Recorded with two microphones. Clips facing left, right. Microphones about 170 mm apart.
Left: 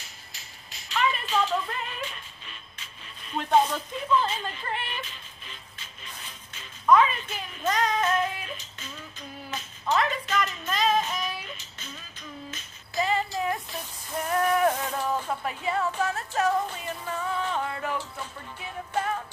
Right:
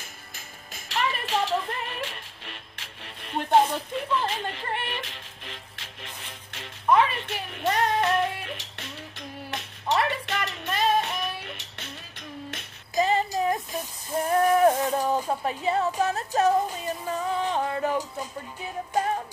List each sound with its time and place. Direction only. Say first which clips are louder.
0.3 s music: right 5 dB; 50° right (ahead or behind)
1.2 s music: right 1 dB; 70° right (ahead or behind)
12.9 s a sound: right 3 dB; 40° right (ahead or behind)
14.1 s a sound: right 4 dB; 30° right (ahead or behind)
14.9 s speech: right 4 dB; 35° right (ahead or behind)
16.7 s music: right 3 dB; 35° right (ahead or behind)